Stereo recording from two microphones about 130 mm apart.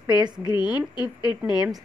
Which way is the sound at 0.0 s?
30° right (ahead or behind).